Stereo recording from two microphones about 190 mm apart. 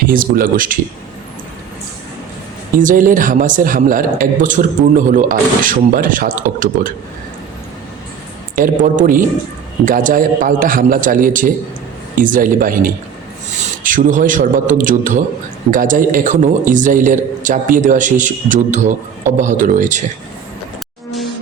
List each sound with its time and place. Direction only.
0.0 s a man's voice: 45° right (ahead or behind)
2.7 s a man's voice: 45° right (ahead or behind)
8.5 s a man's voice: 45° right (ahead or behind)